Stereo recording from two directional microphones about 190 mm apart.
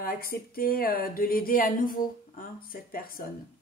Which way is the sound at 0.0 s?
50° left (ahead or behind).